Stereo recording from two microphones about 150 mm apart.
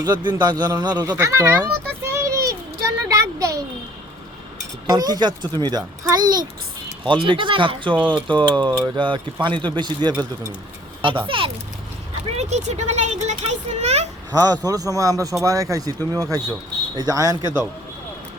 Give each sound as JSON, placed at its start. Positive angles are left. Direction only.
{"t": 0.0, "sound": "a child's voice", "side_deg": -30}
{"t": 1.1, "sound": "a child's voice", "side_deg": -15}
{"t": 2.3, "sound": "a sound", "side_deg": -20}
{"t": 4.9, "sound": "a child's voice", "side_deg": -25}
{"t": 12.4, "sound": "speech", "side_deg": -50}
{"t": 14.3, "sound": "a child's voice", "side_deg": -25}